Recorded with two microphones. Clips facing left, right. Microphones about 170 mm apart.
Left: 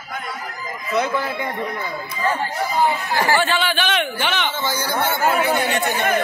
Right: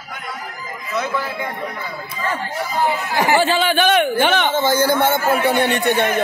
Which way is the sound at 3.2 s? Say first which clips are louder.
Right 4 dB; 20° right (ahead or behind).